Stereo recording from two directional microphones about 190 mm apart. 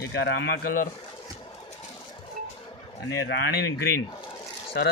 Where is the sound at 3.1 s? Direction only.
65° left (ahead or behind).